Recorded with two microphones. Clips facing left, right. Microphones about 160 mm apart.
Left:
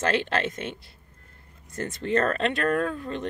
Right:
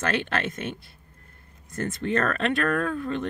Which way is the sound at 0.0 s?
30° left (ahead or behind).